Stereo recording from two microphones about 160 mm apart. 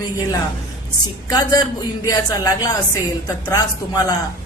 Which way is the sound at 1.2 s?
25° left (ahead or behind).